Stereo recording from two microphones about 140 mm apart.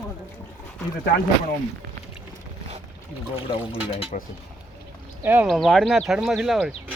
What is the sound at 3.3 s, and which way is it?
Speech, 40° left (ahead or behind).